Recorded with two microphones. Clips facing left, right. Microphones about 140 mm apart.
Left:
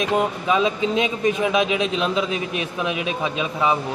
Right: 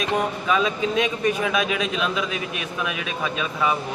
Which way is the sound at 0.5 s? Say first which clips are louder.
Left 1 dB; 20° left (ahead or behind).